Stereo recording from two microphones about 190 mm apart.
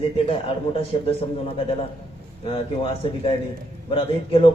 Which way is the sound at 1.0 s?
30° left (ahead or behind).